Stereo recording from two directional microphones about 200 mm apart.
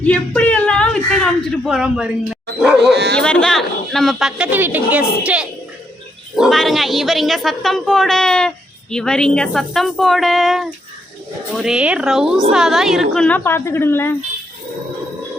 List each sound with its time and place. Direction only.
0.0 s speech: 5° left (ahead or behind)
2.9 s speech: 55° right (ahead or behind)
3.2 s speech: 5° left (ahead or behind)